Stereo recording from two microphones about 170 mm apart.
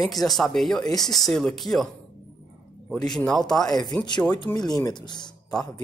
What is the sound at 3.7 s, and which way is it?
Speech, 25° left (ahead or behind).